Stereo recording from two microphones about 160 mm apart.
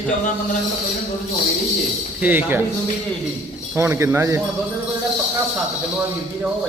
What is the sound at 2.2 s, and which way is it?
Speech, 10° right (ahead or behind).